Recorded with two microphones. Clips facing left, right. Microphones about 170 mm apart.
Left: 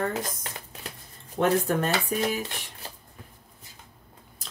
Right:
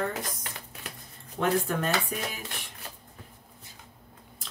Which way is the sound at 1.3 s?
40° left (ahead or behind).